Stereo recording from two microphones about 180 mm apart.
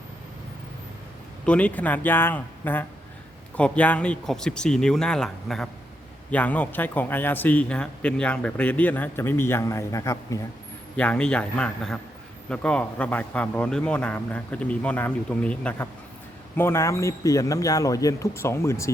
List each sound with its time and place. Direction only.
1.5 s a man's voice: 5° left (ahead or behind)
10.9 s a man's voice: 5° left (ahead or behind)